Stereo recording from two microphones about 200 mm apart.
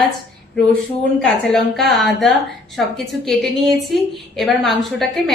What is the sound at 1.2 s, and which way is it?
A woman's voice, centre (ahead or behind).